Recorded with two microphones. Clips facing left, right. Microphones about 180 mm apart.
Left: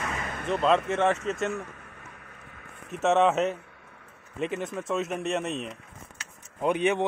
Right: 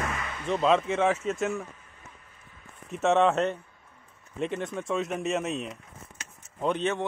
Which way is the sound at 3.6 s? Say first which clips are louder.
Left 4 dB; 70° left (ahead or behind).